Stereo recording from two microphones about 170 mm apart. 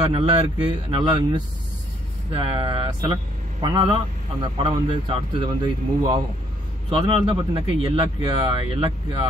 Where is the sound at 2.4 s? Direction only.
35° right (ahead or behind).